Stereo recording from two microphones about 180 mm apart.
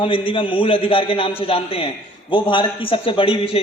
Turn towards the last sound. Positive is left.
turn(degrees=30)  # may be behind; listen again after turning